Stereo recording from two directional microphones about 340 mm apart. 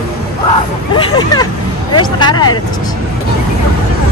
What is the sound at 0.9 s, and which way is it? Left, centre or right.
Speech, centre.